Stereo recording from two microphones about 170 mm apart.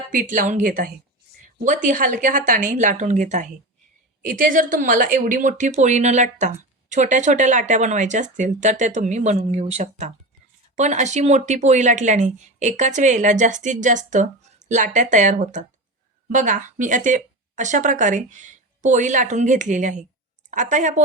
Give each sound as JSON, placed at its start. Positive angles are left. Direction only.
{"t": 0.1, "sound": "speech", "side_deg": -50}